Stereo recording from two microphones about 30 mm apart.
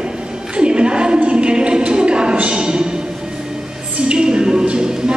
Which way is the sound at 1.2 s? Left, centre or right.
Right.